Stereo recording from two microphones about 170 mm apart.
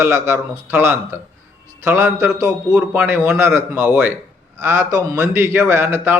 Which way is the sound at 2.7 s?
5° right (ahead or behind).